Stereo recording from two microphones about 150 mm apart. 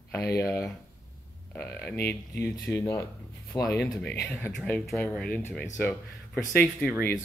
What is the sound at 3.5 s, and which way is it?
Speech, 30° left (ahead or behind).